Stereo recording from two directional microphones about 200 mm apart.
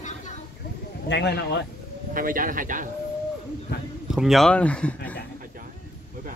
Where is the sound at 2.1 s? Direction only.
45° right (ahead or behind).